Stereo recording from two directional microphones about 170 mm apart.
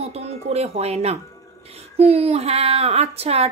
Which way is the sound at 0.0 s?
40° right (ahead or behind).